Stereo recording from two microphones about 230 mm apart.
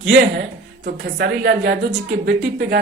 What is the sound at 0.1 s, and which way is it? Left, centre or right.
A woman's voice, right.